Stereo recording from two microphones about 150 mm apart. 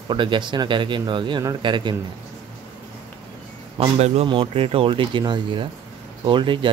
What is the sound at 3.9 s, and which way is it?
Speech, 45° right (ahead or behind).